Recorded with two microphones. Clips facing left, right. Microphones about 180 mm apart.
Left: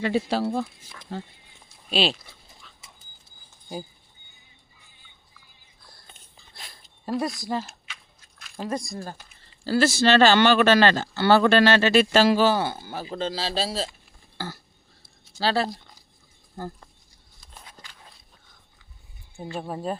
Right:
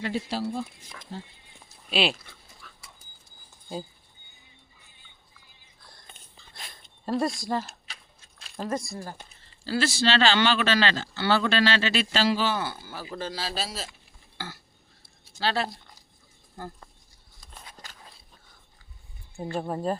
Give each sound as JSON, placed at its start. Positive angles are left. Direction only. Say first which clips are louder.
{"t": 0.0, "sound": "speech", "louder": "left 6 dB", "side_deg": 70}
{"t": 7.0, "sound": "speech", "louder": "even", "side_deg": 5}
{"t": 7.3, "sound": "speech", "louder": "even", "side_deg": 20}
{"t": 7.9, "sound": "biting", "louder": "left 1 dB", "side_deg": -35}
{"t": 8.7, "sound": "speech", "louder": "left 1 dB", "side_deg": 15}
{"t": 9.6, "sound": "speech", "louder": "left 5 dB", "side_deg": 45}
{"t": 12.8, "sound": "speech", "louder": "left 5 dB", "side_deg": 20}
{"t": 14.3, "sound": "burping", "louder": "left 5 dB", "side_deg": 40}
{"t": 15.4, "sound": "speech", "louder": "left 4 dB", "side_deg": 35}
{"t": 17.8, "sound": "a sound", "louder": "right 3 dB", "side_deg": -45}
{"t": 19.5, "sound": "speech", "louder": "right 2 dB", "side_deg": 5}